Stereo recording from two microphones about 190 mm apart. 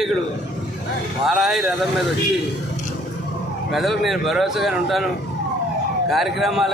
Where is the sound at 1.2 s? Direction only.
Centre (ahead or behind).